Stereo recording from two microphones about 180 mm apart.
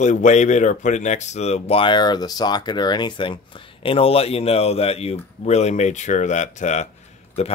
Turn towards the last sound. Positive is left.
turn(degrees=35)  # may be behind; listen again after turning